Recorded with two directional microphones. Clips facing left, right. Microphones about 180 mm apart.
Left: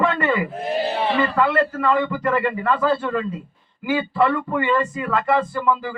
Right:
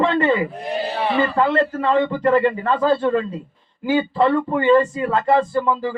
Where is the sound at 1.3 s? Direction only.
30° right (ahead or behind).